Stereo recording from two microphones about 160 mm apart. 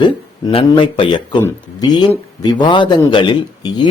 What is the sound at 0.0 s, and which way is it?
Speech, 30° left (ahead or behind).